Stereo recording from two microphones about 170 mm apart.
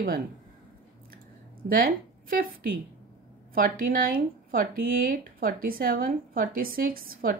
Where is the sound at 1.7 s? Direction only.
55° right (ahead or behind).